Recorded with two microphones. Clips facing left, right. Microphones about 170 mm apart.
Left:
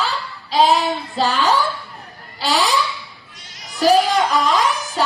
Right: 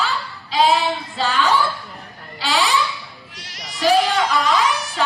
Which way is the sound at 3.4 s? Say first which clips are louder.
Right 5 dB; 85° right.